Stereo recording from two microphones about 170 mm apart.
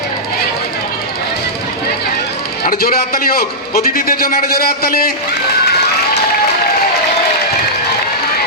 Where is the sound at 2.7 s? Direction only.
60° left (ahead or behind).